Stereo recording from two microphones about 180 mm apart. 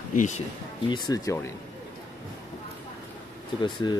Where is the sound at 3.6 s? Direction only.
25° left (ahead or behind).